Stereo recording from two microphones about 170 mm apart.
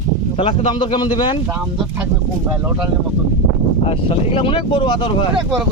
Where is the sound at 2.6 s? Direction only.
10° right (ahead or behind).